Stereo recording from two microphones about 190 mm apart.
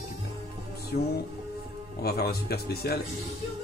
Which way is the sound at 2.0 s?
55° left (ahead or behind).